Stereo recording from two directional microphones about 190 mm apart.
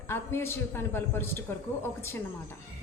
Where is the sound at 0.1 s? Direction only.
15° left (ahead or behind).